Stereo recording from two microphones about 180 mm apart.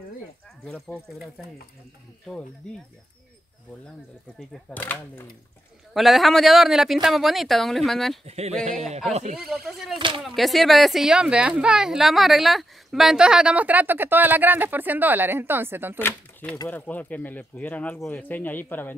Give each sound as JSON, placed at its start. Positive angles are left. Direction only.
{"t": 0.7, "sound": "speech", "side_deg": 5}
{"t": 4.4, "sound": "speech", "side_deg": 5}
{"t": 8.3, "sound": "speech", "side_deg": -35}
{"t": 9.4, "sound": "speech", "side_deg": 0}
{"t": 9.9, "sound": "speech", "side_deg": -25}
{"t": 10.2, "sound": "speech", "side_deg": 0}
{"t": 16.0, "sound": "speech", "side_deg": 10}